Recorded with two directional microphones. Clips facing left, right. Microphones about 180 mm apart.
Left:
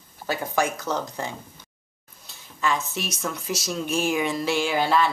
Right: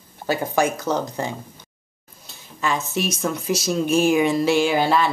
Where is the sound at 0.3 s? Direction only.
30° right (ahead or behind).